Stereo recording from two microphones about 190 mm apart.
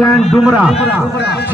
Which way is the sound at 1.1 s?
60° left (ahead or behind).